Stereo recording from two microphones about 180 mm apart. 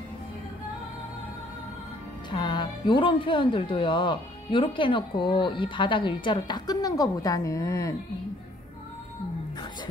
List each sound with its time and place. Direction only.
2.3 s speech: 25° left (ahead or behind)